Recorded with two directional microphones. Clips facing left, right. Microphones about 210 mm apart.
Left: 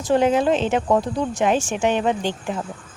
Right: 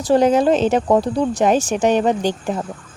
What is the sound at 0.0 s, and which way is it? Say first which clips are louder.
Speech: right 4 dB; 35° right (ahead or behind).